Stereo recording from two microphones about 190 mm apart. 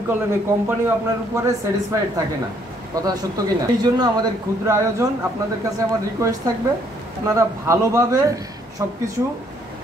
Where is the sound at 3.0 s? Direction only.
20° right (ahead or behind).